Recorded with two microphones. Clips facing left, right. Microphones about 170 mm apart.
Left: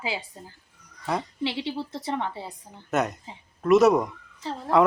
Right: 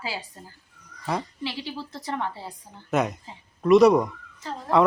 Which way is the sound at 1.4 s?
25° left (ahead or behind).